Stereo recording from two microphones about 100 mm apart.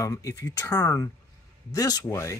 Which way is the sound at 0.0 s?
35° left (ahead or behind).